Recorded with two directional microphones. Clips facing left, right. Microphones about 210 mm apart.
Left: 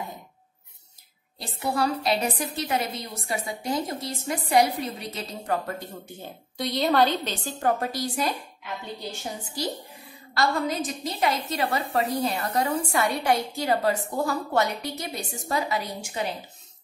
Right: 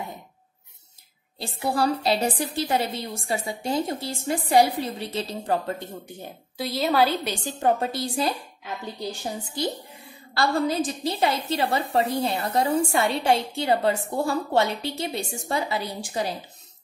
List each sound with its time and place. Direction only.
1.4 s a woman's voice: 30° right (ahead or behind)
6.0 s a woman's voice: 10° right (ahead or behind)
7.6 s a woman's voice: 25° right (ahead or behind)
10.3 s a woman's voice: 30° right (ahead or behind)